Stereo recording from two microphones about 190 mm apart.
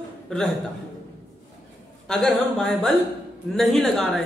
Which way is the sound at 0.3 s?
5° left (ahead or behind).